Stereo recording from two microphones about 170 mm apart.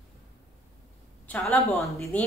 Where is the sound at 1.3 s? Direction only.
5° left (ahead or behind).